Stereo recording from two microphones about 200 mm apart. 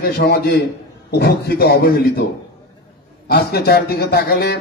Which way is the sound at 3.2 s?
50° left (ahead or behind).